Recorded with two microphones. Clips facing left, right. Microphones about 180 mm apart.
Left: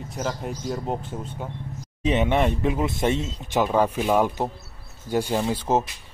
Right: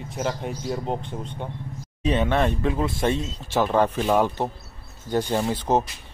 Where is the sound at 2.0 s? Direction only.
20° left (ahead or behind).